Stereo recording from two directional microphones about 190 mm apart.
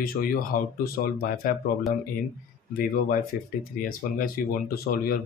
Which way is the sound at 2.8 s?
50° left (ahead or behind).